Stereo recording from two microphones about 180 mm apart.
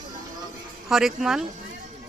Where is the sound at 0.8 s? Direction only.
Centre (ahead or behind).